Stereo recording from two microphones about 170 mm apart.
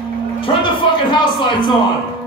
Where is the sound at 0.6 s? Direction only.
30° left (ahead or behind).